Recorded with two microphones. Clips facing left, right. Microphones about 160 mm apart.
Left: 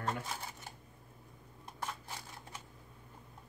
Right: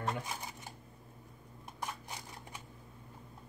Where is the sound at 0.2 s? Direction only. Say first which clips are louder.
Even; 15° right (ahead or behind).